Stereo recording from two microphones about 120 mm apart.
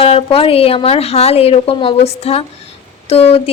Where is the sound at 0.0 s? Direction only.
55° left (ahead or behind).